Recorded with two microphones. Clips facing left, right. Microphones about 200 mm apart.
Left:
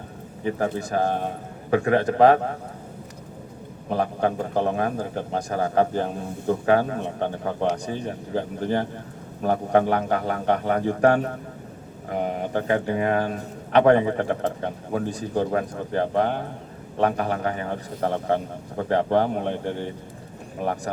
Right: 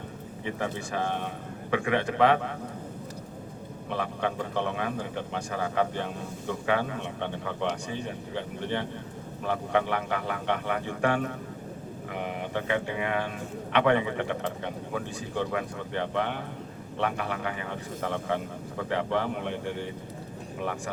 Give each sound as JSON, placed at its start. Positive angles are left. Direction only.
{"t": 0.4, "sound": "a man's voice", "side_deg": 40}
{"t": 3.8, "sound": "a man's voice", "side_deg": 40}